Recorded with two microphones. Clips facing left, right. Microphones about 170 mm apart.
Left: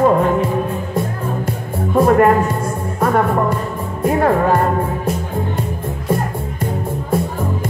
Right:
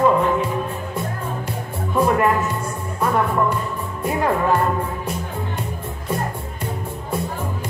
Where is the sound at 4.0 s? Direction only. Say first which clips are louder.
Left 6 dB; 45° left (ahead or behind).